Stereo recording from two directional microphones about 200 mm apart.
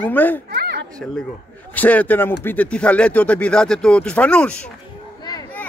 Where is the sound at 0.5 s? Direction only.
50° right (ahead or behind).